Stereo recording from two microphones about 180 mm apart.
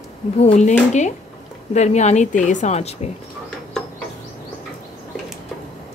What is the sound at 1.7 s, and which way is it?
A woman's voice, 40° left (ahead or behind).